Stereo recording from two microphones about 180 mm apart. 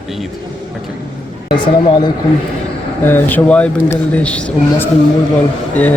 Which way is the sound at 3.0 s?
10° left (ahead or behind).